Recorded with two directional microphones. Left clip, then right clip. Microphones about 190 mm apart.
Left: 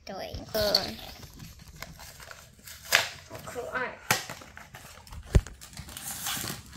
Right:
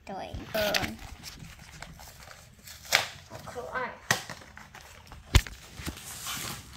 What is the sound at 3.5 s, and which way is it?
Chop, 45° left (ahead or behind).